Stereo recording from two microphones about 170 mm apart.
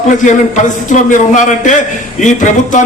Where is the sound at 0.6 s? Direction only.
45° left (ahead or behind).